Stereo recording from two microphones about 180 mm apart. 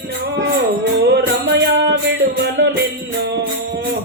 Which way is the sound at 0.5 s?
70° right (ahead or behind).